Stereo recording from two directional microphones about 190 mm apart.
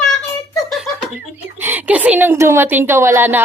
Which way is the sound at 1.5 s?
10° right (ahead or behind).